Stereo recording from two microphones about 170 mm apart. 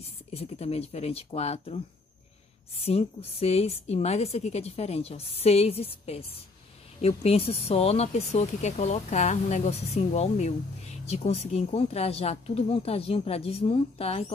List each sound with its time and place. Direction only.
0.0 s speech: 35° left (ahead or behind)
2.8 s speech: 35° left (ahead or behind)